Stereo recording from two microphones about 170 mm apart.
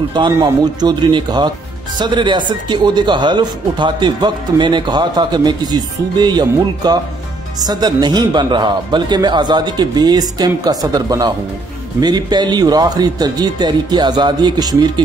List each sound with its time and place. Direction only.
0.3 s speech: 20° right (ahead or behind)